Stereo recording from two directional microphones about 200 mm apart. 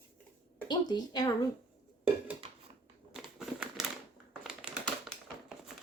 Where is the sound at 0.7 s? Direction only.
20° left (ahead or behind).